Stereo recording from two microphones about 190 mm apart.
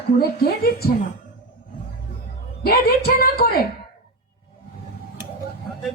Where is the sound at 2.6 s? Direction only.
55° left (ahead or behind).